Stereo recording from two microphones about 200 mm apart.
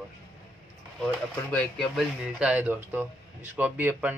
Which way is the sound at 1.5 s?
5° left (ahead or behind).